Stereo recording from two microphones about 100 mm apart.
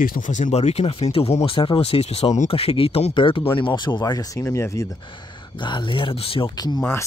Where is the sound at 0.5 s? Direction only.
90° left.